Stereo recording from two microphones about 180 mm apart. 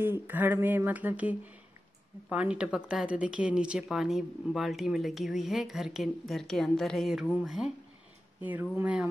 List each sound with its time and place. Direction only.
0.0 s speech: 10° right (ahead or behind)